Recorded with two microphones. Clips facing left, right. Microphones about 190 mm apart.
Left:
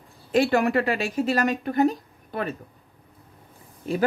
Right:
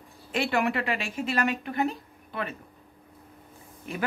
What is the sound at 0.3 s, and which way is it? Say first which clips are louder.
Speech: left 6 dB; 40° left (ahead or behind).